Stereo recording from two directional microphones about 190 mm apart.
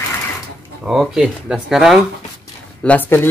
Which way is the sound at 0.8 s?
5° right (ahead or behind).